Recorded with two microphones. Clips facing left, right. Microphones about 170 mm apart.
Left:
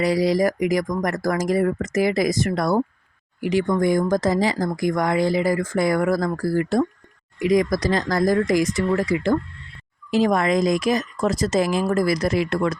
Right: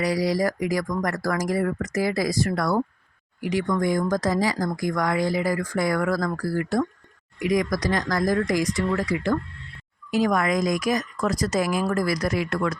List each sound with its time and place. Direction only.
0.0 s speech: 25° left (ahead or behind)